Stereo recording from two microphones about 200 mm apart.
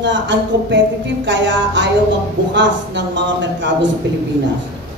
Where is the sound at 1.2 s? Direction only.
65° right (ahead or behind).